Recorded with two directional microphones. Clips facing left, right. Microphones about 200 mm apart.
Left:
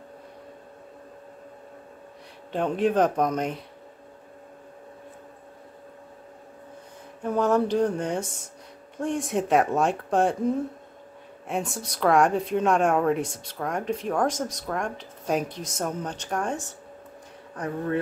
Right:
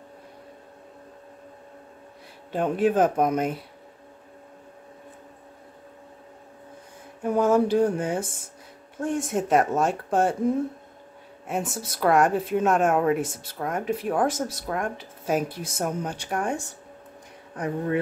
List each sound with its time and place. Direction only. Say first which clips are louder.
2.5 s speech: right 1 dB; 5° right (ahead or behind)
7.2 s a woman's voice: right 2 dB; 10° right (ahead or behind)
11.4 s a woman's voice: even; 5° right (ahead or behind)